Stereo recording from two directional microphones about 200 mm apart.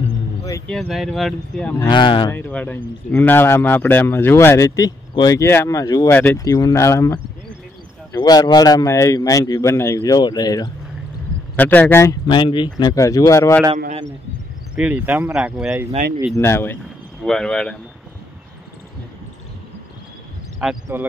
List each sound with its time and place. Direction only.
0.7 s speech: centre (ahead or behind)
1.9 s speech: 25° left (ahead or behind)
2.3 s a man's voice: 10° left (ahead or behind)
11.5 s a man's voice: 10° left (ahead or behind)
14.8 s speech: 5° right (ahead or behind)
16.3 s a man's voice: 10° left (ahead or behind)
20.6 s speech: 5° right (ahead or behind)